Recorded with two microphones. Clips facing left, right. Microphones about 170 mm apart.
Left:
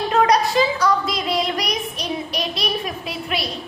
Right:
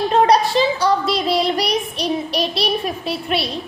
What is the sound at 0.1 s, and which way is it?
Child singing, 30° right (ahead or behind).